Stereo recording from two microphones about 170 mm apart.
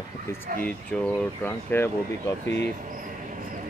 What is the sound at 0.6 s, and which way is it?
Speech, 5° left (ahead or behind).